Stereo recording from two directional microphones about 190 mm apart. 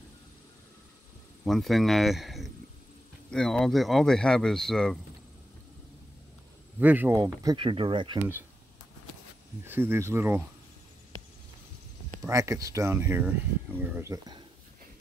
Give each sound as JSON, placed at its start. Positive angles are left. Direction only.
{"t": 1.4, "sound": "speech", "side_deg": 0}
{"t": 6.8, "sound": "speech", "side_deg": -10}
{"t": 7.2, "sound": "speech", "side_deg": -20}
{"t": 9.7, "sound": "speech", "side_deg": -10}
{"t": 12.3, "sound": "speech", "side_deg": -15}